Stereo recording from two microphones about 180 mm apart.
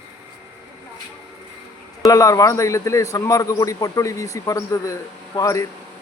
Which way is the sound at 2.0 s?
20° left (ahead or behind).